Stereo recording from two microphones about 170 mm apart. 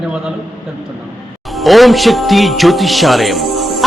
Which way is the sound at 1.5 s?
Centre (ahead or behind).